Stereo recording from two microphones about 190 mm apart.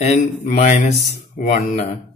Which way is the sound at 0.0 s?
35° left (ahead or behind).